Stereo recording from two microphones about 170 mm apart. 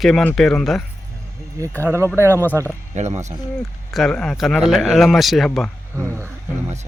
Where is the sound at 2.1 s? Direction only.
15° right (ahead or behind).